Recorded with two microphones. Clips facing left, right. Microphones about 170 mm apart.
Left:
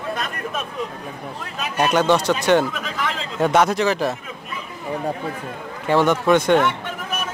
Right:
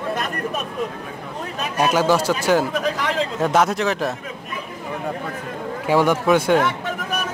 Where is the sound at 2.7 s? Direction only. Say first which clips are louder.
Right 7 dB; 40° right (ahead or behind).